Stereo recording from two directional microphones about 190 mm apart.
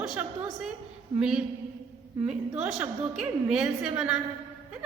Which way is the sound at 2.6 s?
Centre (ahead or behind).